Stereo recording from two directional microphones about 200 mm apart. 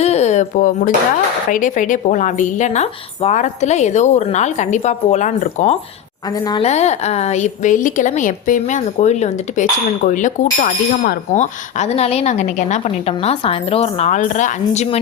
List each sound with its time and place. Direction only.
0.0 s a sound: 35° left (ahead or behind)
1.5 s a woman's voice: 40° left (ahead or behind)
6.4 s speech: 20° left (ahead or behind)
6.7 s a woman's voice: 35° left (ahead or behind)